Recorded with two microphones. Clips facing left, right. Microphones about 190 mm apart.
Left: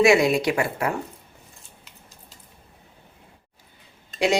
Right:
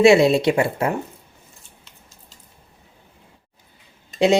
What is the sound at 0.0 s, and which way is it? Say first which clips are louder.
Speech: right 4 dB; 25° right (ahead or behind).